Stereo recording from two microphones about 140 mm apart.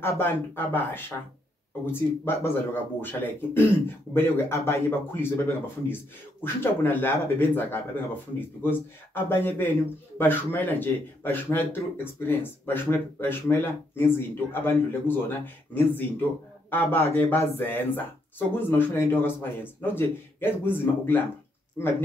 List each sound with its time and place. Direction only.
0.0 s speech: 15° left (ahead or behind)
6.4 s speech: 15° left (ahead or behind)